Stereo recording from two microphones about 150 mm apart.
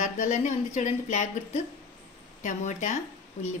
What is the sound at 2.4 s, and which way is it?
Speech, 55° left (ahead or behind).